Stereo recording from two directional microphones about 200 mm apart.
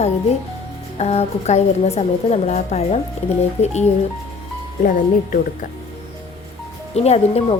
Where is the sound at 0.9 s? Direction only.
30° left (ahead or behind).